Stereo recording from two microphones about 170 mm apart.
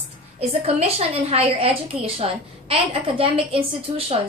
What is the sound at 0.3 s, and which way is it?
A woman's voice, 35° right (ahead or behind).